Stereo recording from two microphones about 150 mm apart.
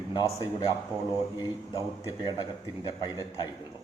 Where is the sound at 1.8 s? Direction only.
25° left (ahead or behind).